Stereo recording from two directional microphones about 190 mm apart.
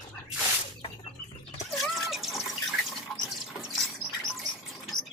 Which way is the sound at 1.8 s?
Centre (ahead or behind).